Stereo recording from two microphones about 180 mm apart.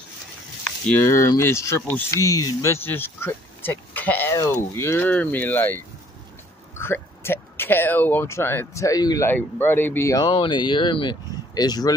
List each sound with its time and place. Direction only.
0.7 s a sound: 5° left (ahead or behind)
1.0 s speech: 15° left (ahead or behind)
6.8 s speech: 15° left (ahead or behind)